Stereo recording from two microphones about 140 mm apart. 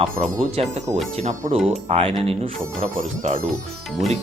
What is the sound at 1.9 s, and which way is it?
Speech, 45° right (ahead or behind).